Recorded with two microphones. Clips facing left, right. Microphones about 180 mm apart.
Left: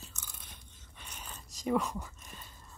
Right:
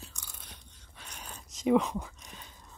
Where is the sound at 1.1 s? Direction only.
Centre (ahead or behind).